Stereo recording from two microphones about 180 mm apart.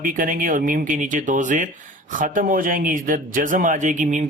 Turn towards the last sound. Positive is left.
turn(degrees=-45)  # may be behind; listen again after turning